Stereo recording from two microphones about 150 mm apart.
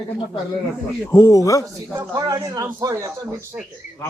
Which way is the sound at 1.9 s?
25° right (ahead or behind).